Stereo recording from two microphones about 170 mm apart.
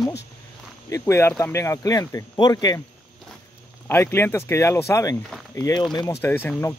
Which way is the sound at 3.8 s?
15° left (ahead or behind).